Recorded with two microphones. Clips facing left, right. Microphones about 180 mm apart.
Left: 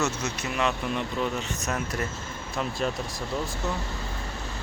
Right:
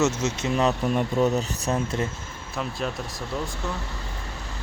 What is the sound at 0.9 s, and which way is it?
Speech, 40° right (ahead or behind).